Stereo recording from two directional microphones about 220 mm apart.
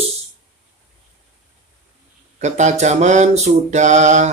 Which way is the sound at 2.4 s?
30° right (ahead or behind).